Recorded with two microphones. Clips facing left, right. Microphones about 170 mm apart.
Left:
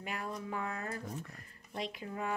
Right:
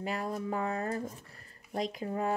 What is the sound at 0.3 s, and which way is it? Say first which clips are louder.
Speech: right 5 dB; 40° right (ahead or behind).